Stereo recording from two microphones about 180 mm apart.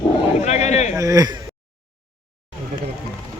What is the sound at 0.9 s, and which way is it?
Speech, 20° right (ahead or behind).